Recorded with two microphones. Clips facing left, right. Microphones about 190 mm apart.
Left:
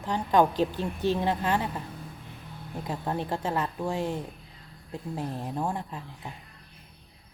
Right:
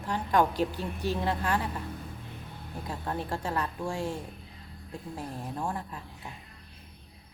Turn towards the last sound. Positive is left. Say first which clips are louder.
# left 3 dB
turn(degrees=20)  # may be behind; listen again after turning